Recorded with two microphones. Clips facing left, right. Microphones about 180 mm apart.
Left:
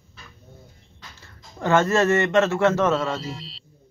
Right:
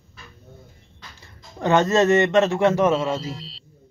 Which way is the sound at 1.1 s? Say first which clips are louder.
Right 2 dB; 15° right (ahead or behind).